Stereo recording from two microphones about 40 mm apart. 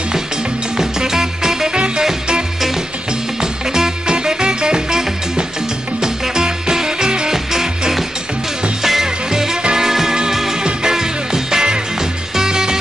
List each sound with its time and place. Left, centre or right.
0.7 s music: centre
3.7 s music: centre